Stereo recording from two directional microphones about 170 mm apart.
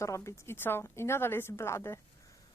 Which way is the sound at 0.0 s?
15° left (ahead or behind).